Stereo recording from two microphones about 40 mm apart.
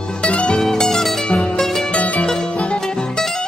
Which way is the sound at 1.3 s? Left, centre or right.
Left.